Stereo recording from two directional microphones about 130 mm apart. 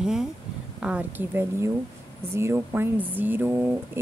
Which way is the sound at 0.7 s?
10° right (ahead or behind).